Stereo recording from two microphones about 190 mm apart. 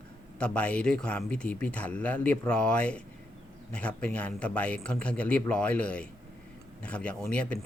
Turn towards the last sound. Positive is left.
turn(degrees=5)  # may be behind; listen again after turning